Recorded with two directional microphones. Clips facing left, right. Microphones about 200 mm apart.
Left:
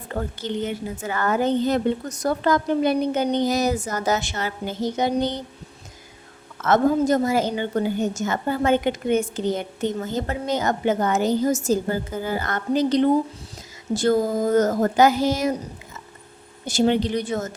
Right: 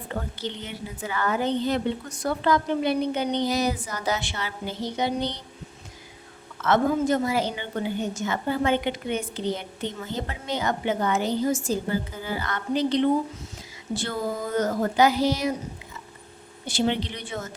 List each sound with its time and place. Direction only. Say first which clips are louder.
0.4 s a woman's voice: left 7 dB; 45° left (ahead or behind)
6.6 s a woman's voice: left 3 dB; 45° left (ahead or behind)
16.6 s a woman's voice: left 6 dB; 45° left (ahead or behind)